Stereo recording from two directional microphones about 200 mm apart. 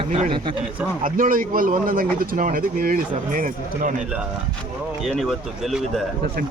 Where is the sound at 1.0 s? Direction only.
45° right (ahead or behind).